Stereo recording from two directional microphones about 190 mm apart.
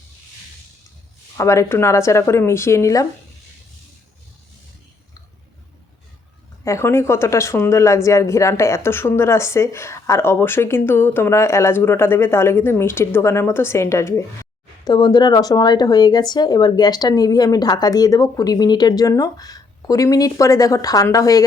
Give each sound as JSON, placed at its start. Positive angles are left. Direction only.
{"t": 1.4, "sound": "a woman's voice", "side_deg": 15}
{"t": 6.7, "sound": "a woman's voice", "side_deg": 15}